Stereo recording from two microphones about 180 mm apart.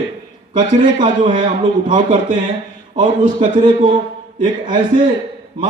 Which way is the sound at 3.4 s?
25° right (ahead or behind).